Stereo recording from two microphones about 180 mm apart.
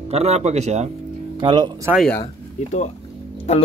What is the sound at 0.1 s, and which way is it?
Speech, 35° right (ahead or behind).